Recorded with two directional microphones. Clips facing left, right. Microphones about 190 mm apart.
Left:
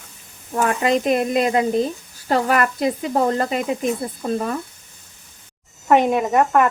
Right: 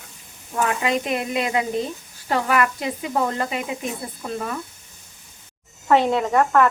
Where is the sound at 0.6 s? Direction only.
45° left (ahead or behind).